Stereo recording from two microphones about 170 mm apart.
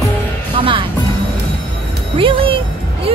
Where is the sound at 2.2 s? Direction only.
30° right (ahead or behind).